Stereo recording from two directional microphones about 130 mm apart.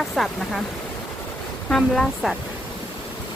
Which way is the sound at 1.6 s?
5° left (ahead or behind).